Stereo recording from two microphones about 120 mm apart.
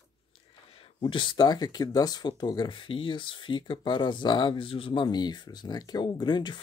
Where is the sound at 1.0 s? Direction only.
40° left (ahead or behind).